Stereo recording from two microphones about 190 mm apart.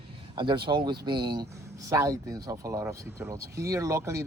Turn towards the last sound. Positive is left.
turn(degrees=-15)  # may be behind; listen again after turning